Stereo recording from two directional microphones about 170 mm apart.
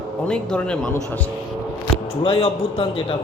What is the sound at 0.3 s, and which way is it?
Speech, 5° left (ahead or behind).